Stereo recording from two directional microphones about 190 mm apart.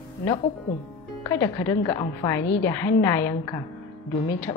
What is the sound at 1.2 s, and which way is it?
A woman's voice, 15° left (ahead or behind).